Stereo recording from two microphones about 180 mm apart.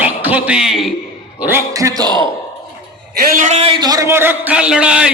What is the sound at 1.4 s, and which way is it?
Speech, 10° right (ahead or behind).